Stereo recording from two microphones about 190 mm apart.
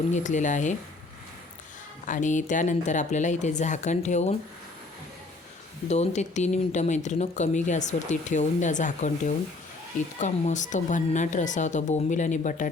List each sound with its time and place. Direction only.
0.1 s speech: 40° left (ahead or behind)
2.0 s speech: 40° left (ahead or behind)
5.9 s speech: 40° left (ahead or behind)